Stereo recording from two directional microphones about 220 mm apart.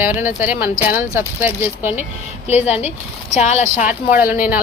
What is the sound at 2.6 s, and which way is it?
Speech, 30° left (ahead or behind).